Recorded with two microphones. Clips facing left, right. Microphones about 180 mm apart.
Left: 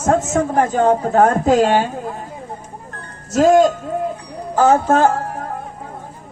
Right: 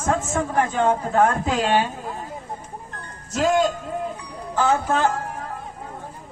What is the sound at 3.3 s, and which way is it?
Speech, 45° left (ahead or behind).